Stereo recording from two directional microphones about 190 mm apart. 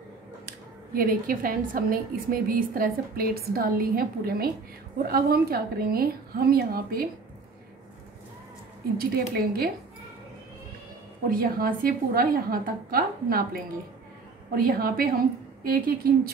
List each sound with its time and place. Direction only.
0.9 s a woman's voice: 50° right (ahead or behind)
8.9 s a woman's voice: 50° right (ahead or behind)
11.2 s a woman's voice: 50° right (ahead or behind)